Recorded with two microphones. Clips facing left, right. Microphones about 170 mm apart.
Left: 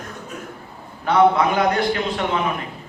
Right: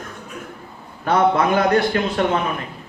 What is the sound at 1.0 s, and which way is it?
Speech, 45° right (ahead or behind).